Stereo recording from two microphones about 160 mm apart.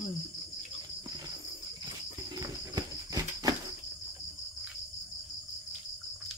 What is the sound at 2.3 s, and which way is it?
Cricket, 25° right (ahead or behind).